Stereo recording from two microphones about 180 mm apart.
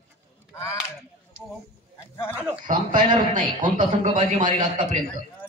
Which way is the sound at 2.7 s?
45° right (ahead or behind).